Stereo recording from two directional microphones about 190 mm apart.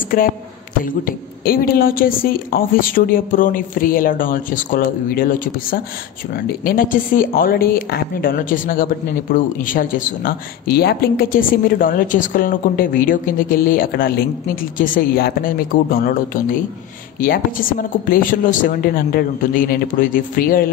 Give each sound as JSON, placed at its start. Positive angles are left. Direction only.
{"t": 0.1, "sound": "speech", "side_deg": 50}